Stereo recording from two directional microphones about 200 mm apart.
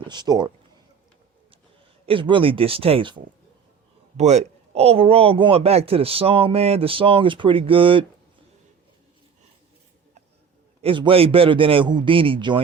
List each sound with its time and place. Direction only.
0.1 s a man's voice: 20° right (ahead or behind)
2.0 s a man's voice: 25° right (ahead or behind)
4.2 s a man's voice: 35° right (ahead or behind)
10.8 s a man's voice: 25° right (ahead or behind)